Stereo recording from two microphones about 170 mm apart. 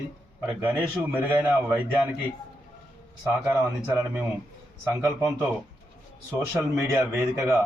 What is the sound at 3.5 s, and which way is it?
A man's voice, 15° right (ahead or behind).